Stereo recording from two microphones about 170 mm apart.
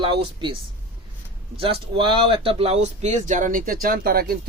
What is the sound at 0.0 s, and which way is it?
Speech, 30° right (ahead or behind).